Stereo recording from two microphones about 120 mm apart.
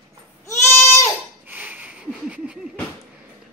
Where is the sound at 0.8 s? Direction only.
20° left (ahead or behind).